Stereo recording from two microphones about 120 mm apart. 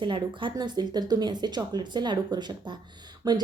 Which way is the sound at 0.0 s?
45° right (ahead or behind).